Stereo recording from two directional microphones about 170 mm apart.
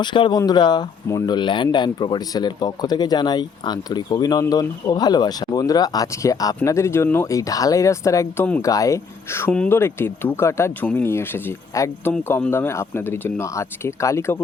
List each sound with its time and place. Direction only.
0.0 s speech: 25° left (ahead or behind)